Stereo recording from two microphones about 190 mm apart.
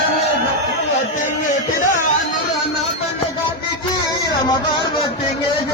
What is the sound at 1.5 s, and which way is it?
Music, 40° left (ahead or behind).